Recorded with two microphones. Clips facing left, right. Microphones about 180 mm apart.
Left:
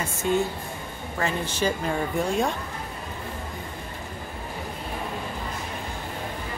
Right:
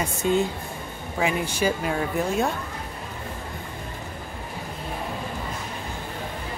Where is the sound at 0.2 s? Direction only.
15° right (ahead or behind).